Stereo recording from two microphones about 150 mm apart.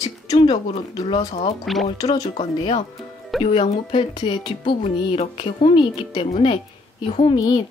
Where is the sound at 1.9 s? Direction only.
25° left (ahead or behind).